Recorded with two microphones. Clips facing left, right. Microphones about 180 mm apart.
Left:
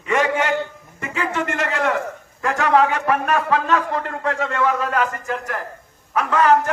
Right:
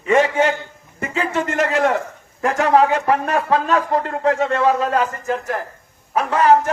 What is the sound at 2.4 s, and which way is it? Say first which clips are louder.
Speech: right 3 dB; 20° right (ahead or behind).